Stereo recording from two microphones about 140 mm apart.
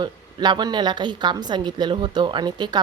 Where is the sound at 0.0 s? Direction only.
30° right (ahead or behind).